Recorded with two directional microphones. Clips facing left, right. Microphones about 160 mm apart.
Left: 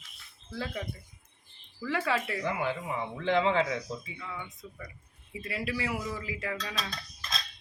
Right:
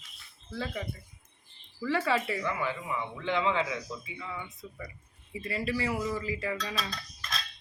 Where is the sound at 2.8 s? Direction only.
40° left (ahead or behind).